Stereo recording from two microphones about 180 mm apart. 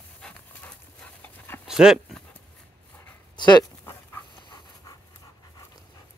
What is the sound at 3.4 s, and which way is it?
Pant, 20° left (ahead or behind).